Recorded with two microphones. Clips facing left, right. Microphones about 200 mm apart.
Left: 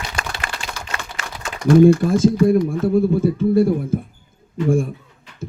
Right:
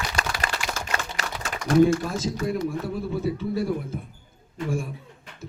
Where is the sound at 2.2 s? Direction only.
50° left (ahead or behind).